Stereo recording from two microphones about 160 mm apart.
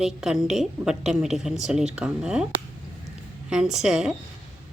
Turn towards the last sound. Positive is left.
turn(degrees=-5)  # may be behind; listen again after turning